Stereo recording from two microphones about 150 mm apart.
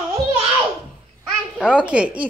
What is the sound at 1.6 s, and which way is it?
Speech, 5° right (ahead or behind).